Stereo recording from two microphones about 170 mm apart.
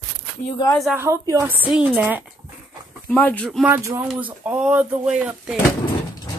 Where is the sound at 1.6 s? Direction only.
10° right (ahead or behind).